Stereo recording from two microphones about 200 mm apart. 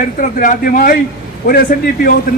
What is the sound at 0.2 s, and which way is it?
Speech, 40° left (ahead or behind).